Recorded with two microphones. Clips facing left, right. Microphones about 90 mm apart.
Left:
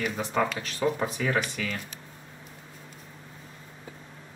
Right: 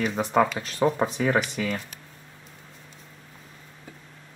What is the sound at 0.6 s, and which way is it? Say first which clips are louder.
Speech: right 4 dB; 40° right (ahead or behind).